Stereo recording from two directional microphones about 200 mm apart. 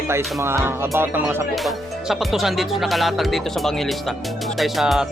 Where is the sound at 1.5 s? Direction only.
Centre (ahead or behind).